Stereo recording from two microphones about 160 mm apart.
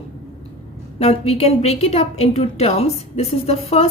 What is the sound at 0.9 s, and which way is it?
A woman's voice, 40° left (ahead or behind).